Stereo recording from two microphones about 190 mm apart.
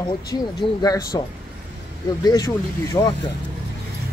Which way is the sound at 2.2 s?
20° left (ahead or behind).